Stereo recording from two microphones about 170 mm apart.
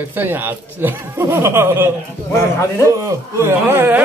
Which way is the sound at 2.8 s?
20° right (ahead or behind).